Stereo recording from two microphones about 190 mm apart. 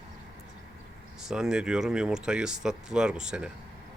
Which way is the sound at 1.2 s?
5° right (ahead or behind).